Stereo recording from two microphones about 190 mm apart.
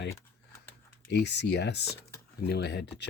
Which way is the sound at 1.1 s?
65° left (ahead or behind).